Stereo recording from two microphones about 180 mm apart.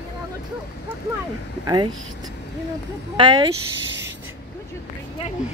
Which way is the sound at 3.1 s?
25° right (ahead or behind).